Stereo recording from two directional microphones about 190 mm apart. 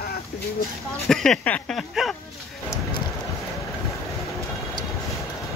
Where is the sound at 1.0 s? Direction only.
Centre (ahead or behind).